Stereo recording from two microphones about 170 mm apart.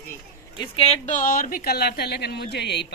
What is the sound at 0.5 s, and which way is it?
Speech, 30° left (ahead or behind).